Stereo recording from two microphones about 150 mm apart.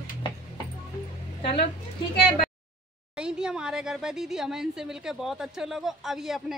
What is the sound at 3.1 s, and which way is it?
A woman's voice, 5° right (ahead or behind).